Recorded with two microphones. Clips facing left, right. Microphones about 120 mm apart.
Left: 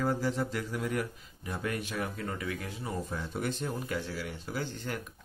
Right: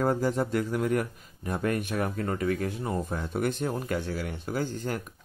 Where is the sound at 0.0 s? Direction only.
50° right (ahead or behind).